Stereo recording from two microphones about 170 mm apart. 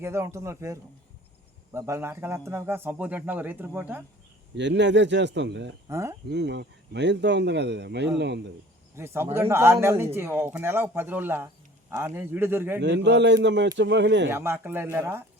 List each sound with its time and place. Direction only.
0.0 s speech: 15° right (ahead or behind)
4.5 s speech: 90° right
5.9 s speech: 15° right (ahead or behind)
6.2 s speech: 85° right
9.0 s speech: 15° right (ahead or behind)
12.8 s speech: 90° right
14.3 s speech: 15° right (ahead or behind)